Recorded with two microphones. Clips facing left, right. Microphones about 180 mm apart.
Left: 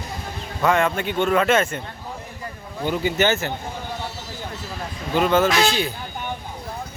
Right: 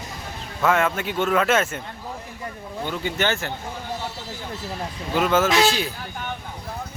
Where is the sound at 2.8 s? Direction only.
10° left (ahead or behind).